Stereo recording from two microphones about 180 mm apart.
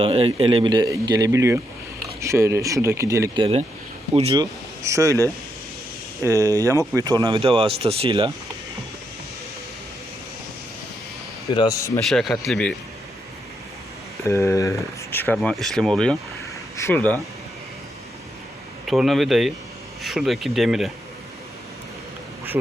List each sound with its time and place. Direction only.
0.0 s speech: 30° right (ahead or behind)
4.1 s speech: 30° right (ahead or behind)
4.8 s speech: 15° right (ahead or behind)
6.2 s speech: 20° right (ahead or behind)
11.5 s speech: 20° left (ahead or behind)
12.0 s speech: centre (ahead or behind)
14.3 s speech: 15° left (ahead or behind)
18.9 s speech: centre (ahead or behind)